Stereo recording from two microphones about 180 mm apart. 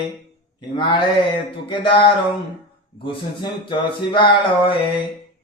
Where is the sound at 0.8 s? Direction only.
25° left (ahead or behind).